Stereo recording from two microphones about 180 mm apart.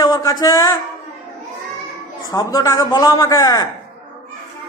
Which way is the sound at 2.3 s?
20° left (ahead or behind).